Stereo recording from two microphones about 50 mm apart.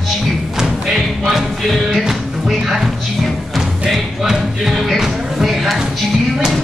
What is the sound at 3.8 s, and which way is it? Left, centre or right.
Music, centre.